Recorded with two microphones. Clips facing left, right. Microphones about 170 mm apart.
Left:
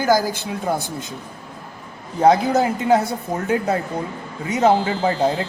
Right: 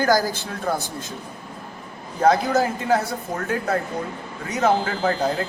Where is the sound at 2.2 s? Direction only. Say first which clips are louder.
Left 3 dB; 20° left (ahead or behind).